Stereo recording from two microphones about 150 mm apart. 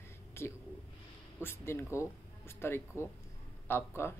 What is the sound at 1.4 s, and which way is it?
Speech, 15° left (ahead or behind).